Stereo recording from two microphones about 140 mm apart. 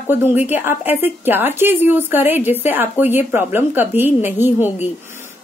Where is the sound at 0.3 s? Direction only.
15° right (ahead or behind).